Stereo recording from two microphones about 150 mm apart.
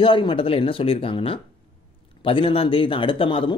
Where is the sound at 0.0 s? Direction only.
35° left (ahead or behind).